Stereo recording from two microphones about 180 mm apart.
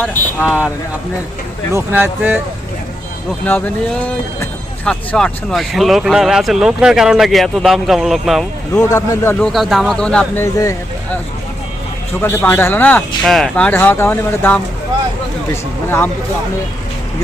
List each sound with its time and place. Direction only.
0.0 s speech: 10° left (ahead or behind)
1.7 s speech: 10° right (ahead or behind)
3.4 s speech: 10° left (ahead or behind)
8.9 s speech: 15° left (ahead or behind)
9.5 s speech: centre (ahead or behind)
10.4 s speech: 15° left (ahead or behind)
12.2 s speech: 10° left (ahead or behind)